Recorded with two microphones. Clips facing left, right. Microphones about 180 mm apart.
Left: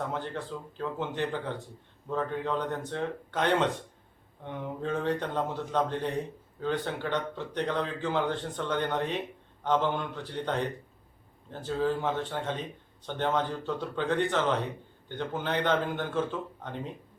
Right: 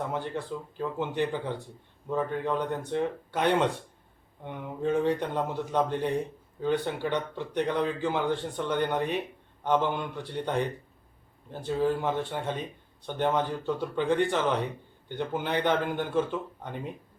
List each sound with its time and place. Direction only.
0.1 s speech: 10° right (ahead or behind)